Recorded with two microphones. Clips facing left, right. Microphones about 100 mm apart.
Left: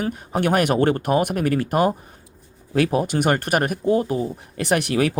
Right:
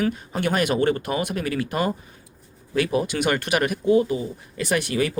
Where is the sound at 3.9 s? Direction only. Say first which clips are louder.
Right 1 dB; 60° left (ahead or behind).